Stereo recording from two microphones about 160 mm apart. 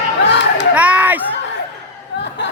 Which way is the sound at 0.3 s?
90° left.